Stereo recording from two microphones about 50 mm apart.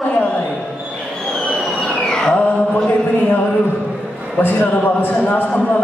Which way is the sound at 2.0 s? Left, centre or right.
Centre.